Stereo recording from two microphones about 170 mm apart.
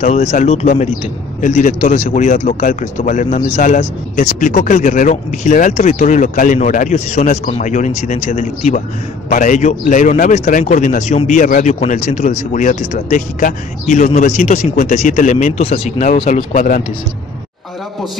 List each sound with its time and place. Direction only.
0.0 s a man's voice: 45° left (ahead or behind)